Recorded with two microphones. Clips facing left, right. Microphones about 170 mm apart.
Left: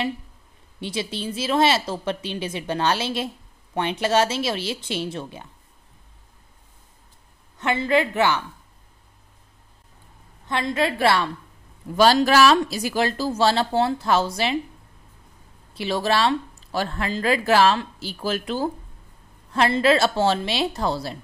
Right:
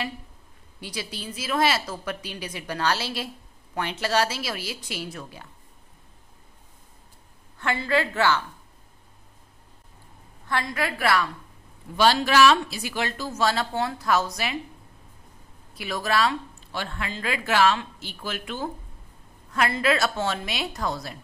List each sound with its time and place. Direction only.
0.7 s speech: 25° left (ahead or behind)
7.5 s speech: 20° left (ahead or behind)
10.5 s speech: 25° left (ahead or behind)
12.0 s speech: 40° left (ahead or behind)
15.7 s speech: 30° left (ahead or behind)